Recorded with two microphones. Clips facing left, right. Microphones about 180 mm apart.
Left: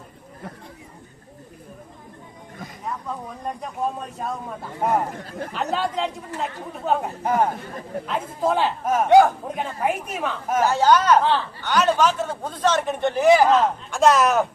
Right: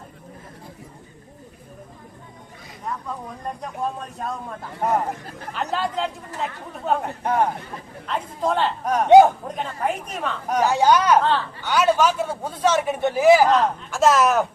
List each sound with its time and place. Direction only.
2.8 s speech: 5° left (ahead or behind)
9.0 s a man's voice: 20° right (ahead or behind)
9.6 s a woman's voice: 5° left (ahead or behind)
10.6 s a man's voice: 15° right (ahead or behind)
11.2 s speech: 5° left (ahead or behind)
11.6 s a man's voice: 10° right (ahead or behind)